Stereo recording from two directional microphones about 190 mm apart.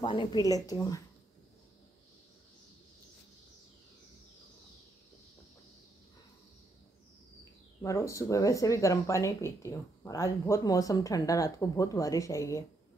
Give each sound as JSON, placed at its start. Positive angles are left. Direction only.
{"t": 0.0, "sound": "a woman's voice", "side_deg": 25}
{"t": 7.8, "sound": "speech", "side_deg": 15}